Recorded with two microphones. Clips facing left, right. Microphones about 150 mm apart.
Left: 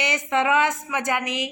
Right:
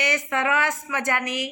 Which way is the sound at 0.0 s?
20° left (ahead or behind).